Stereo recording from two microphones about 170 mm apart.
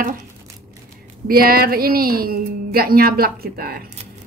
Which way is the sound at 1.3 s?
60° right (ahead or behind).